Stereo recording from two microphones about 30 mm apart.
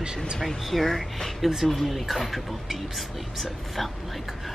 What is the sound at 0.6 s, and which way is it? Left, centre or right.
Speech, centre.